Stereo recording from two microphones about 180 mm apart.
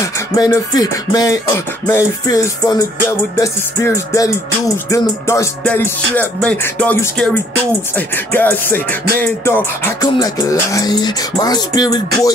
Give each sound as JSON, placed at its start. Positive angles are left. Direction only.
{"t": 0.4, "sound": "music", "side_deg": 20}
{"t": 8.3, "sound": "music", "side_deg": 10}